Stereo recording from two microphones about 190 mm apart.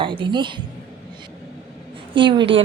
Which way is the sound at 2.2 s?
25° right (ahead or behind).